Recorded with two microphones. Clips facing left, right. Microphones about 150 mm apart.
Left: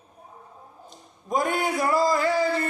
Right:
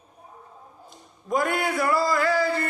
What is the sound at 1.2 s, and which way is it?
A man's voice, 20° left (ahead or behind).